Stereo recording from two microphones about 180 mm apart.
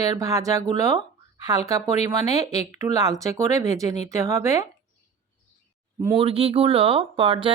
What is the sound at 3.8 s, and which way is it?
Speech, 40° left (ahead or behind).